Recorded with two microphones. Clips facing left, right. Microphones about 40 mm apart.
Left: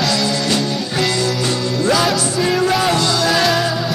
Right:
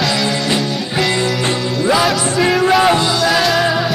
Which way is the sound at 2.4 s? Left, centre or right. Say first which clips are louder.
Right 5 dB; centre.